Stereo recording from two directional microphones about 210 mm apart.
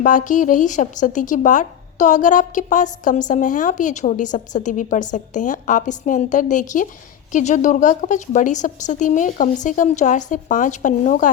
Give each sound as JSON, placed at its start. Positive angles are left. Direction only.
{"t": 0.0, "sound": "speech", "side_deg": 35}